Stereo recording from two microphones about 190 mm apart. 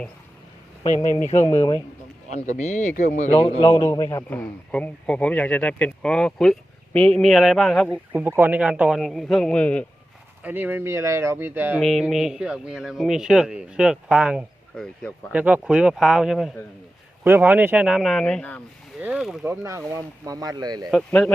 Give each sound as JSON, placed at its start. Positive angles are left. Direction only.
{"t": 1.5, "sound": "a man's voice", "side_deg": 25}
{"t": 2.3, "sound": "a man's voice", "side_deg": 35}
{"t": 3.8, "sound": "speech", "side_deg": 15}
{"t": 10.4, "sound": "speech", "side_deg": -10}
{"t": 11.8, "sound": "speech", "side_deg": 0}
{"t": 19.5, "sound": "speech", "side_deg": -15}
{"t": 20.9, "sound": "speech", "side_deg": 5}